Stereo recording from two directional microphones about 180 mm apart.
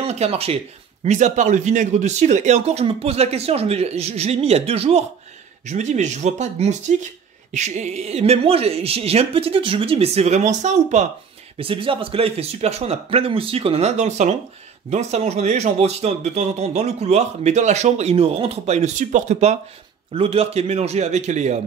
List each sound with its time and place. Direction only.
0.0 s speech: 35° right (ahead or behind)
11.5 s speech: 30° right (ahead or behind)